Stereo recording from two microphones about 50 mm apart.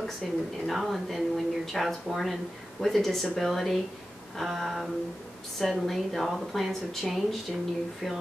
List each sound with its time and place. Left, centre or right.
0.2 s speech: centre